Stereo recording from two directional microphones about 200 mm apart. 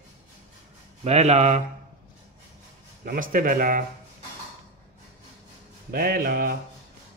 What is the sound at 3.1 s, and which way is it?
Speech, 45° right (ahead or behind).